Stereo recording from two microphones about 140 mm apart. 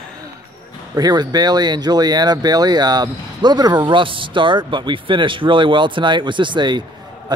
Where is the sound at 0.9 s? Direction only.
30° right (ahead or behind).